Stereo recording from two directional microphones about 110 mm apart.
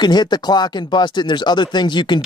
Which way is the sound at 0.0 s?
40° left (ahead or behind).